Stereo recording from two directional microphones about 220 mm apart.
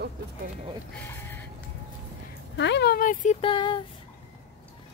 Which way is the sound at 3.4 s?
20° left (ahead or behind).